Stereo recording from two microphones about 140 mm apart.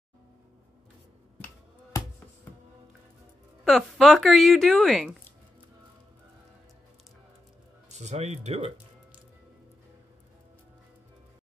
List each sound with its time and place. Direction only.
1.4 s finger snapping: 20° left (ahead or behind)
3.6 s a woman's voice: centre (ahead or behind)
8.0 s speech: 55° right (ahead or behind)